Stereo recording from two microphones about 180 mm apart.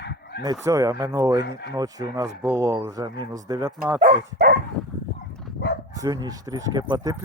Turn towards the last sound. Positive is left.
turn(degrees=-20)  # may be behind; listen again after turning